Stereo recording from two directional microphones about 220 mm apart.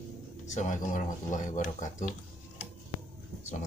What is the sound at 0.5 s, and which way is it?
Speech, 35° left (ahead or behind).